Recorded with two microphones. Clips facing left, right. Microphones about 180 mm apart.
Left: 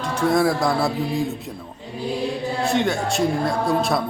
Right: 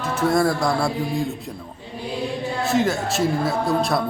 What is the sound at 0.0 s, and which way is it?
Speech, centre (ahead or behind).